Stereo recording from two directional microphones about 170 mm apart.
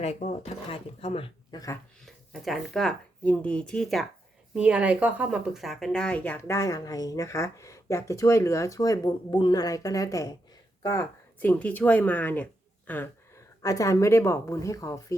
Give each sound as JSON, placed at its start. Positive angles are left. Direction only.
{"t": 0.0, "sound": "speech", "side_deg": 40}
{"t": 2.0, "sound": "speech", "side_deg": 0}
{"t": 11.4, "sound": "a woman's voice", "side_deg": 10}